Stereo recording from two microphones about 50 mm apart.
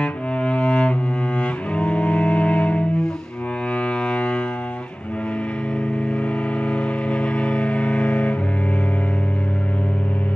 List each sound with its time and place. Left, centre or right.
0.0 s cello: left
3.8 s a sound: left
6.1 s civil defense siren: left